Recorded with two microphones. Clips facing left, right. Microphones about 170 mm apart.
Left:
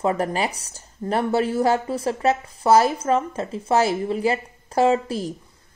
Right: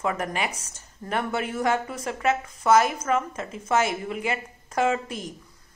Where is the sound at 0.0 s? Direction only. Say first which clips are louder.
Left 5 dB; 35° left (ahead or behind).